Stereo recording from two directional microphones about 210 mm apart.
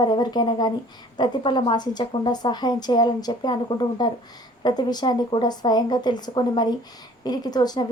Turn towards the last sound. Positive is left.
turn(degrees=20)  # may be behind; listen again after turning